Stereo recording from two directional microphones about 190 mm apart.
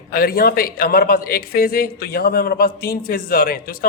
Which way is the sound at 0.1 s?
50° left (ahead or behind).